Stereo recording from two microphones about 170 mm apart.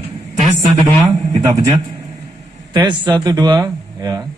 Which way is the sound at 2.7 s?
25° right (ahead or behind).